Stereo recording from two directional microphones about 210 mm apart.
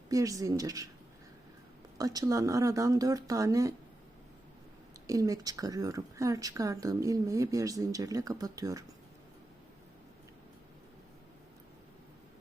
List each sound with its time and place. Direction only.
0.1 s speech: 15° right (ahead or behind)
2.0 s speech: 15° right (ahead or behind)
5.0 s speech: 15° right (ahead or behind)